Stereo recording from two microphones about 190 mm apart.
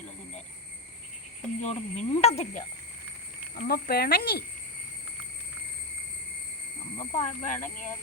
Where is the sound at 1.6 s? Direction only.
35° left (ahead or behind).